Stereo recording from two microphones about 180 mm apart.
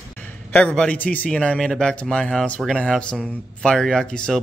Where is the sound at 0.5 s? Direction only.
5° left (ahead or behind).